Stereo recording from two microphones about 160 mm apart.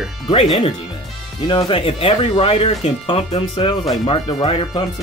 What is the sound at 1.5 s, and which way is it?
Speech, 30° left (ahead or behind).